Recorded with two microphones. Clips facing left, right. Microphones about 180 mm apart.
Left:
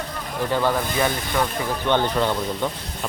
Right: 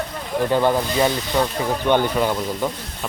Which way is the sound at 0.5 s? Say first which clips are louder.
Right 3 dB; 20° right (ahead or behind).